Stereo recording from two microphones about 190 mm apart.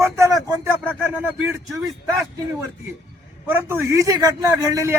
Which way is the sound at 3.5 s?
10° right (ahead or behind).